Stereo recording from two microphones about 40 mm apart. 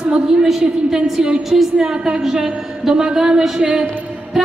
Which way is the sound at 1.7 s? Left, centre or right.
Centre.